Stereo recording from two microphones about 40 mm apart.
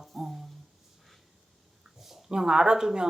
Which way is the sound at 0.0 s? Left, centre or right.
Centre.